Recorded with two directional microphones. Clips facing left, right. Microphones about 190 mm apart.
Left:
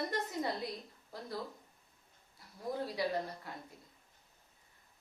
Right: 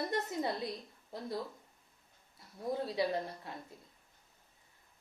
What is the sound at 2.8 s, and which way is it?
Speech, 25° right (ahead or behind).